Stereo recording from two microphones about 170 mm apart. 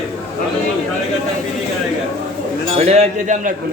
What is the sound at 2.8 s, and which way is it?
Speech, 40° right (ahead or behind).